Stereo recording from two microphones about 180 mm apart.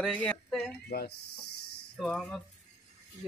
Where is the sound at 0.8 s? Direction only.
60° left (ahead or behind).